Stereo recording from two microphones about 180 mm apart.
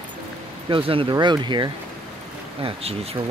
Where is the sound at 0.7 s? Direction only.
30° right (ahead or behind).